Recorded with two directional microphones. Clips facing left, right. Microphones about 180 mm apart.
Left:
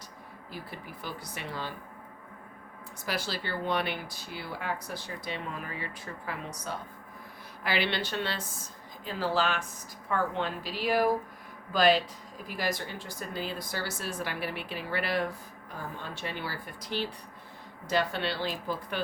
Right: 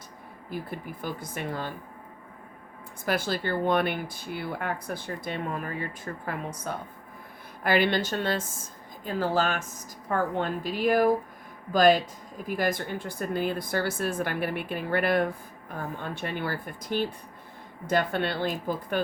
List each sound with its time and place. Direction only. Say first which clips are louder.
0.5 s speech: right 7 dB; 50° right (ahead or behind)
3.1 s speech: right 6 dB; 50° right (ahead or behind)